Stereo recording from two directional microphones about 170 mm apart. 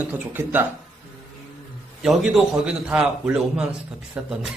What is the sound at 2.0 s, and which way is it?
A man's voice, 5° right (ahead or behind).